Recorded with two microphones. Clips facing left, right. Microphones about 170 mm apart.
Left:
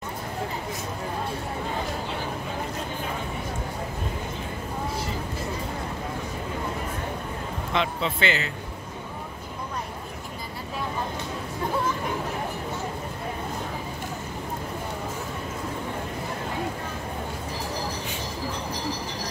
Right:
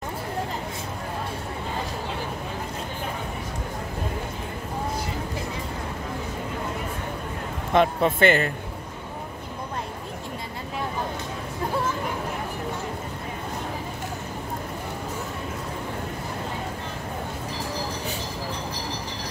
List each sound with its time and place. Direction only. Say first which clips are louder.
7.7 s speech: right 7 dB; 50° right (ahead or behind)